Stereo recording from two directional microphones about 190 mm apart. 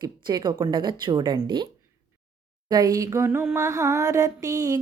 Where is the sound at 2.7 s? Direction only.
20° right (ahead or behind).